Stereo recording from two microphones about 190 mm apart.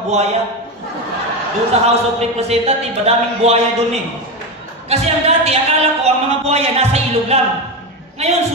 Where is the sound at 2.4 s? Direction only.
35° right (ahead or behind).